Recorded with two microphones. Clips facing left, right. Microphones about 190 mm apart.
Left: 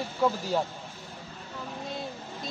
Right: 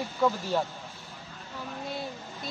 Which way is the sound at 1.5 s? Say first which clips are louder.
Right 1 dB; centre (ahead or behind).